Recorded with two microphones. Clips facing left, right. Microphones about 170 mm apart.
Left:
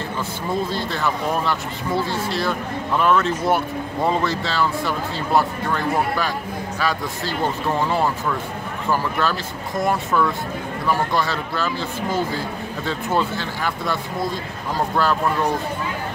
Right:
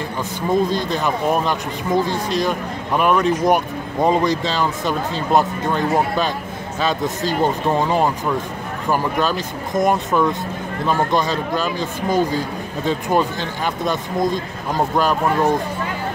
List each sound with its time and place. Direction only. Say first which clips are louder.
0.5 s speech: right 6 dB; 15° right (ahead or behind)